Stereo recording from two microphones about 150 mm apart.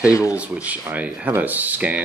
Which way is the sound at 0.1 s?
20° left (ahead or behind).